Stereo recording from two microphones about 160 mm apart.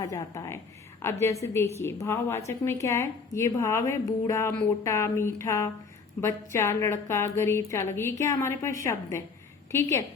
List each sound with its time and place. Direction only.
0.0 s a woman's voice: 20° left (ahead or behind)